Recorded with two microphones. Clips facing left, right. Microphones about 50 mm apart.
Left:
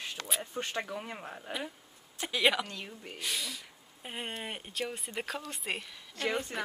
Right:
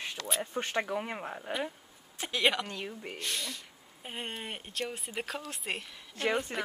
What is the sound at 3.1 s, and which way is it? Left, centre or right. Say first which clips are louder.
Speech: left 3 dB; centre.